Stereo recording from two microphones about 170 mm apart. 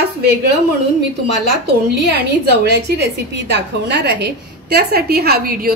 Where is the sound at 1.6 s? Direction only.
75° right (ahead or behind).